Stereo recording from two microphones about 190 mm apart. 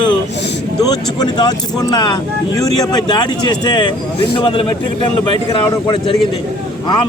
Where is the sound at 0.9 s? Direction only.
20° left (ahead or behind).